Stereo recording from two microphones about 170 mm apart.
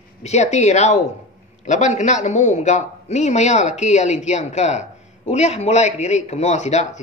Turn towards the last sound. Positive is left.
turn(degrees=40)  # may be behind; listen again after turning